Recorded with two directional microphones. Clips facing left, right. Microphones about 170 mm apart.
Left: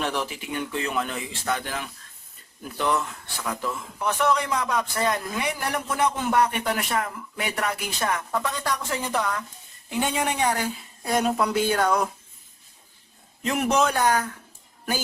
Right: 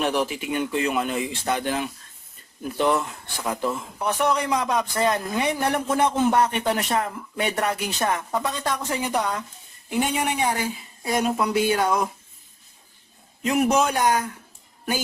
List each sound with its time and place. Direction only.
0.0 s a man's voice: 15° right (ahead or behind)
13.4 s speech: 10° right (ahead or behind)